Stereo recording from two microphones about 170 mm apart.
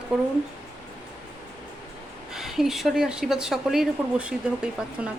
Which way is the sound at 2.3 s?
Centre (ahead or behind).